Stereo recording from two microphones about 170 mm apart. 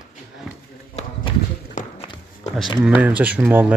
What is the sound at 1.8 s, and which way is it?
Run, 50° left (ahead or behind).